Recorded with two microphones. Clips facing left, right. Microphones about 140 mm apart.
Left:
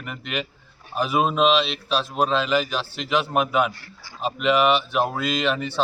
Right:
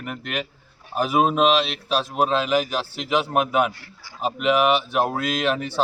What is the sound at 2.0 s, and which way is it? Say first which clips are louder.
A man's voice: right 1 dB; 5° right (ahead or behind).